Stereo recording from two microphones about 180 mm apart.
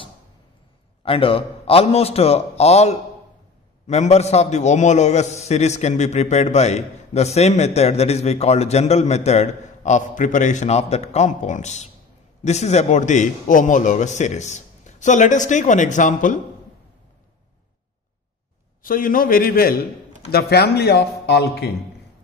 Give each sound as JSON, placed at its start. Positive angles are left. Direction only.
{"t": 1.0, "sound": "a man's voice", "side_deg": 30}
{"t": 18.8, "sound": "a man's voice", "side_deg": 50}